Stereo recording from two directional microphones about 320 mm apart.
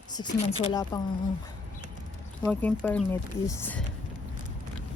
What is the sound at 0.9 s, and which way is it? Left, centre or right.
Speech, centre.